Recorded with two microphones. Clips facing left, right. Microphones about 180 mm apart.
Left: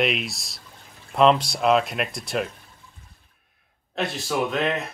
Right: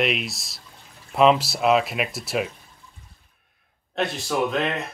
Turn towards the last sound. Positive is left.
turn(degrees=0)  # may be behind; listen again after turning